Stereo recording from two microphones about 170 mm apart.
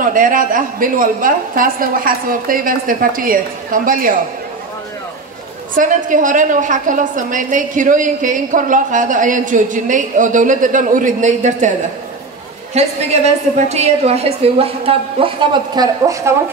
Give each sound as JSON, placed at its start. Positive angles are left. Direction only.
{"t": 0.0, "sound": "a woman's voice", "side_deg": -55}
{"t": 5.8, "sound": "a woman's voice", "side_deg": -50}
{"t": 12.7, "sound": "a woman's voice", "side_deg": -40}